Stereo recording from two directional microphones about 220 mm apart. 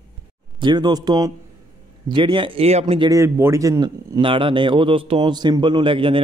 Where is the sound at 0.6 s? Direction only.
20° right (ahead or behind).